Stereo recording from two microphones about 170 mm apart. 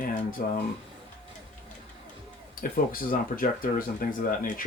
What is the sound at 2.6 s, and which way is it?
Speech, 60° left (ahead or behind).